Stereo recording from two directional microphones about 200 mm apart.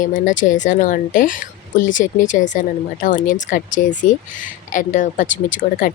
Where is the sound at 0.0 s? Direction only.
40° left (ahead or behind).